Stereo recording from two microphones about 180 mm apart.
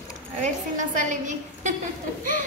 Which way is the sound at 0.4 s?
45° right (ahead or behind).